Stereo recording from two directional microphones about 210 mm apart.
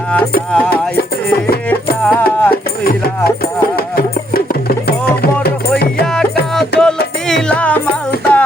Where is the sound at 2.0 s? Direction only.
5° left (ahead or behind).